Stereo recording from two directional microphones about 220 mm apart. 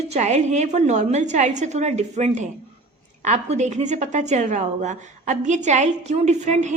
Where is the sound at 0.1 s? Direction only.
30° right (ahead or behind).